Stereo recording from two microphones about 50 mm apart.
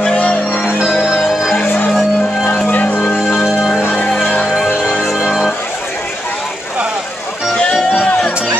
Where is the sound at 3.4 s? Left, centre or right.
Centre.